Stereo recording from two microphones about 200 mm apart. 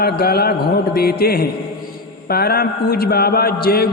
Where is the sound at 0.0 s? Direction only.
50° left (ahead or behind).